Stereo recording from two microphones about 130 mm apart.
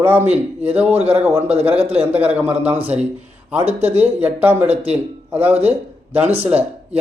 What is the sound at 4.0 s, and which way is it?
Speech, 15° right (ahead or behind).